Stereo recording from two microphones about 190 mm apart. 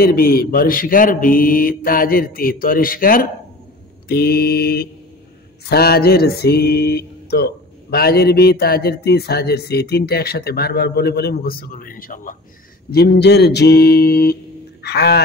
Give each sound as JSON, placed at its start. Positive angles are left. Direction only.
{"t": 0.0, "sound": "mantra", "side_deg": 50}
{"t": 12.9, "sound": "mantra", "side_deg": 60}
{"t": 14.8, "sound": "speech", "side_deg": 60}